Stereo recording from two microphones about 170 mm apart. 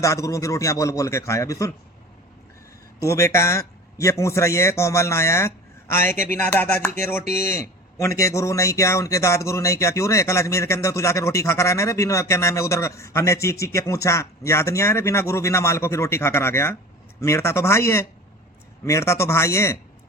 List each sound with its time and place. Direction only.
0.0 s a man's voice: 20° left (ahead or behind)
3.0 s a man's voice: 15° left (ahead or behind)
7.3 s a man's voice: 15° left (ahead or behind)